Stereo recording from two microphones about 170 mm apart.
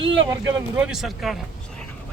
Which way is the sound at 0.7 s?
5° right (ahead or behind).